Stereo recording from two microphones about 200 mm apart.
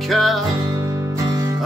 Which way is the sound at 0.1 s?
Centre (ahead or behind).